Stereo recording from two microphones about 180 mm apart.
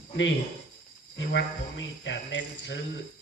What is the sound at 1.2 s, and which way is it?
Speech, 90° left.